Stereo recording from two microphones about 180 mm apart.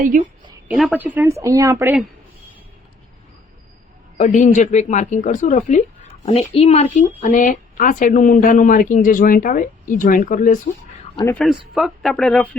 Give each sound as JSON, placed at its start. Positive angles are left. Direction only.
{"t": 0.1, "sound": "a woman's voice", "side_deg": -50}
{"t": 0.7, "sound": "a woman's voice", "side_deg": 0}
{"t": 4.2, "sound": "speech", "side_deg": 45}
{"t": 6.2, "sound": "a woman's voice", "side_deg": 35}
{"t": 11.3, "sound": "speech", "side_deg": 0}